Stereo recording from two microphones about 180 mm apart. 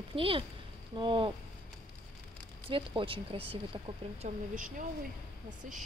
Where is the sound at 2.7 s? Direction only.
30° right (ahead or behind).